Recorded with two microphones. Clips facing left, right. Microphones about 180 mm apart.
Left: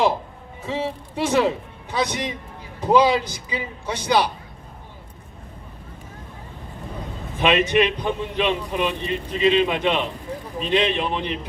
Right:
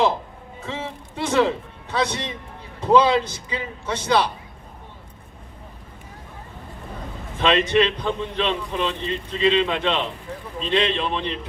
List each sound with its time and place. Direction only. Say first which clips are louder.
0.6 s a man's voice: left 5 dB; 10° left (ahead or behind)
7.3 s a man's voice: even; 15° left (ahead or behind)